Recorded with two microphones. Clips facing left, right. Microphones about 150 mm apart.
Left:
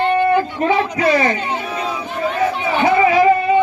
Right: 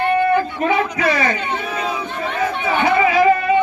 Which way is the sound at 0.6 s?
30° left (ahead or behind).